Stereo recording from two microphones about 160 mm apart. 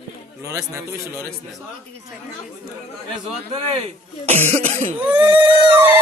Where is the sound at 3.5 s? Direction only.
35° right (ahead or behind).